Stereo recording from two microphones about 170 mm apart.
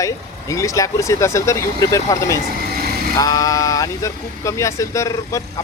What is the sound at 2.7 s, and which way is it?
Vehicle, 60° right (ahead or behind).